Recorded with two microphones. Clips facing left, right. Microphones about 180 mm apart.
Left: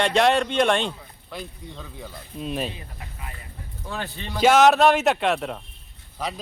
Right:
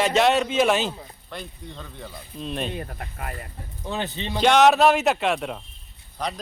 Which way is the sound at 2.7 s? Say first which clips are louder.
Right 8 dB; 60° right (ahead or behind).